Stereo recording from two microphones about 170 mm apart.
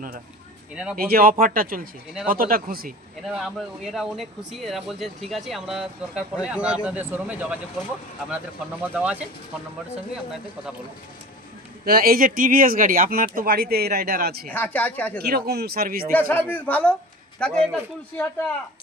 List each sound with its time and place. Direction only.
0.9 s speech: 60° right (ahead or behind)
3.2 s speech: centre (ahead or behind)
8.8 s speech: 5° right (ahead or behind)
11.9 s speech: 60° right (ahead or behind)
14.5 s speech: 10° left (ahead or behind)
15.2 s speech: 65° right (ahead or behind)
16.5 s speech: 10° left (ahead or behind)